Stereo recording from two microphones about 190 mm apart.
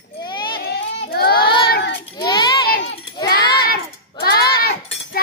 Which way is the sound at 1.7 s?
65° left (ahead or behind).